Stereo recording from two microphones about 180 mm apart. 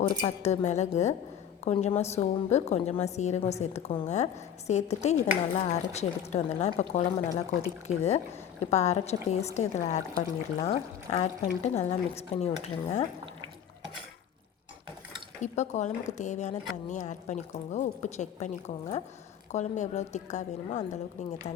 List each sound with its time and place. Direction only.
0.2 s a woman's voice: 40° left (ahead or behind)
15.4 s a woman's voice: 40° left (ahead or behind)